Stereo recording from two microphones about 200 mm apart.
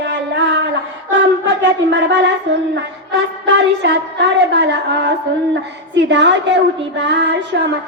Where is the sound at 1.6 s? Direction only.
65° right (ahead or behind).